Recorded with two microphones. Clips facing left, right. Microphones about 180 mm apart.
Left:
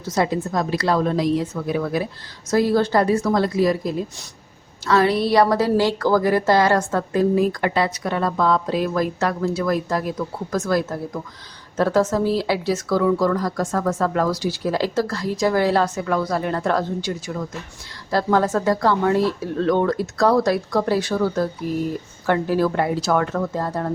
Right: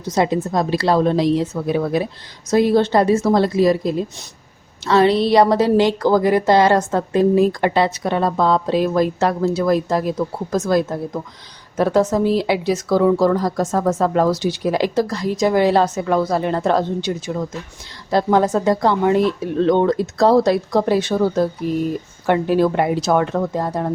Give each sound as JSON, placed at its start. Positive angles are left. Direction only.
{"t": 0.0, "sound": "a woman's voice", "side_deg": -20}